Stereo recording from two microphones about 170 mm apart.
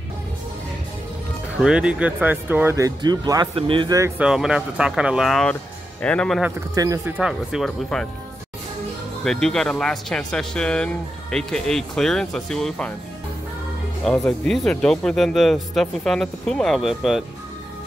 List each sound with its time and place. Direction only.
1.6 s speech: 5° right (ahead or behind); by 4.1 s 25° right (ahead or behind)
4.2 s speech: 5° right (ahead or behind)
6.7 s speech: 20° right (ahead or behind)
7.2 s speech: 5° right (ahead or behind)
9.2 s speech: 5° left (ahead or behind)
14.0 s speech: 5° left (ahead or behind)